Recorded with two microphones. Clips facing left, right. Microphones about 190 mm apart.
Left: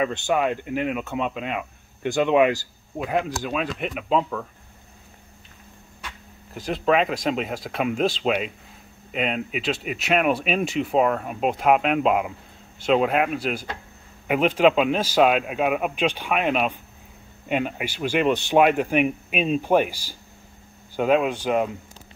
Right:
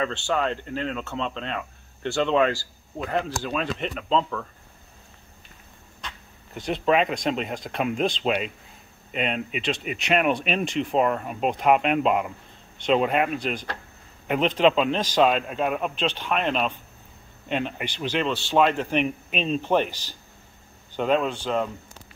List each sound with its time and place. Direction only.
0.0 s speech: 10° left (ahead or behind)
5.9 s speech: 5° left (ahead or behind)